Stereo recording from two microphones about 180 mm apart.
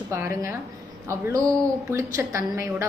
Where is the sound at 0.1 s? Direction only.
15° right (ahead or behind).